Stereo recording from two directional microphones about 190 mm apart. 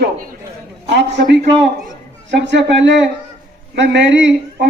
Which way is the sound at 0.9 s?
65° right (ahead or behind).